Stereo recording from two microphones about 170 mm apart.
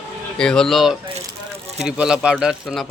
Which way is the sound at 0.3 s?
5° left (ahead or behind).